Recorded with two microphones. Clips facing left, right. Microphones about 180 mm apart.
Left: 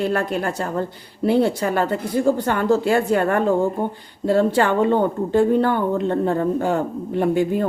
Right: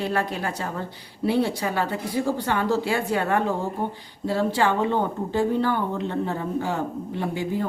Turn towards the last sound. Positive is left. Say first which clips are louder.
# left 8 dB
turn(degrees=55)  # may be behind; listen again after turning